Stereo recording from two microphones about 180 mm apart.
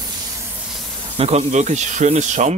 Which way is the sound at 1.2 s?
35° right (ahead or behind).